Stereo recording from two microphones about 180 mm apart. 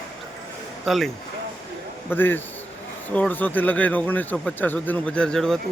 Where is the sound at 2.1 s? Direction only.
10° left (ahead or behind).